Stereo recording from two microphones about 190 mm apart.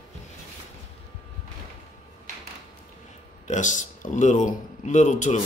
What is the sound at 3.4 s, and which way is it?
Speech, 40° left (ahead or behind).